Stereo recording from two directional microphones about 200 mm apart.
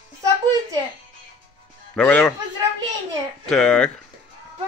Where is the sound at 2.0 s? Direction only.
5° left (ahead or behind).